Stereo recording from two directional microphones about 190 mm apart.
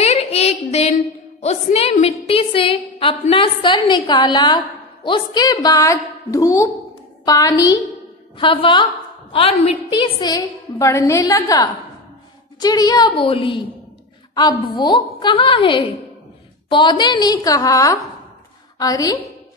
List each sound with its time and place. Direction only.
0.0 s child singing: 35° left (ahead or behind)
1.4 s a woman's voice: 35° left (ahead or behind); by 19.1 s 20° left (ahead or behind)